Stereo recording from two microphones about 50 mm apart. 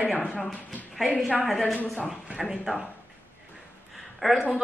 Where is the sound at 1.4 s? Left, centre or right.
Centre.